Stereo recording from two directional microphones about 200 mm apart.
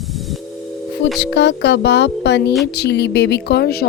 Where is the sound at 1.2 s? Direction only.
60° left (ahead or behind).